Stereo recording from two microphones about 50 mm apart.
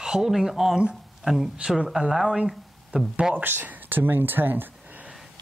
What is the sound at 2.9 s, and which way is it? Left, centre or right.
Speech, right.